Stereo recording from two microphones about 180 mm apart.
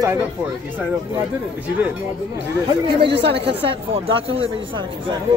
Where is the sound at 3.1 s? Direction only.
70° right (ahead or behind).